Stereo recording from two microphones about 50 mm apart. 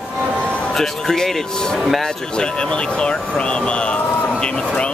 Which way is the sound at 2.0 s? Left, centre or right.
Centre.